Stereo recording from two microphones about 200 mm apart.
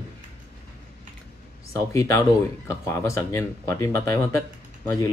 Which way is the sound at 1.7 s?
15° left (ahead or behind).